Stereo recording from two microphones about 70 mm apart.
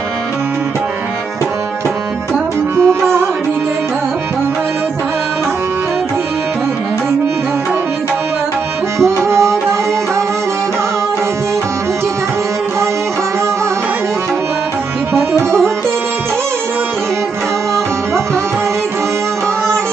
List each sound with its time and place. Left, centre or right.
2.7 s music: right
9.0 s music: right
15.1 s music: right